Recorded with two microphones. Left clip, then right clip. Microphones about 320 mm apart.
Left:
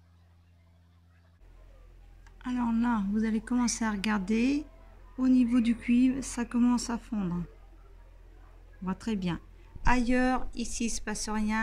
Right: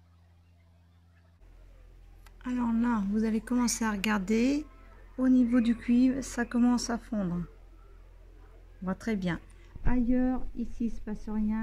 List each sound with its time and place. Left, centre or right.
2.3 s a woman's voice: centre
8.8 s a woman's voice: centre
9.8 s speech: left